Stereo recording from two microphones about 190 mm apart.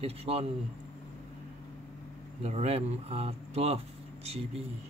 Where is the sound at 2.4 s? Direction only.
35° right (ahead or behind).